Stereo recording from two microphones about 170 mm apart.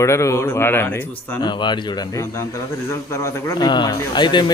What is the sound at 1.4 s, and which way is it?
A man's voice, 25° left (ahead or behind).